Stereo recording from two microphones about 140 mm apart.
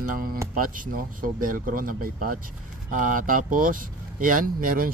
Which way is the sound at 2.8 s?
70° right (ahead or behind).